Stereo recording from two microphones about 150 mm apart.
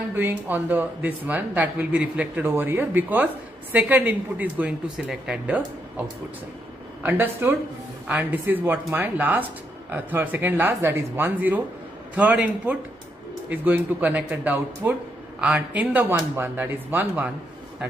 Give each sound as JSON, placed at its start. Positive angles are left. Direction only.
{"t": 0.1, "sound": "speech", "side_deg": -15}